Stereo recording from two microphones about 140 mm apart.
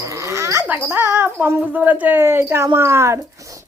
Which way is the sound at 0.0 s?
20° right (ahead or behind).